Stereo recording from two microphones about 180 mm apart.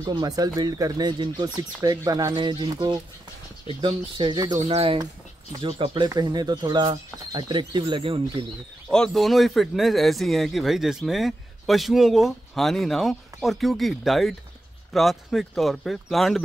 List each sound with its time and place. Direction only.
0.0 s speech: 20° right (ahead or behind)
4.6 s speech: 35° right (ahead or behind)
8.9 s speech: centre (ahead or behind)